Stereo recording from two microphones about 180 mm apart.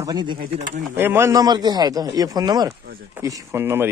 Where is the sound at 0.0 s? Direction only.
25° right (ahead or behind).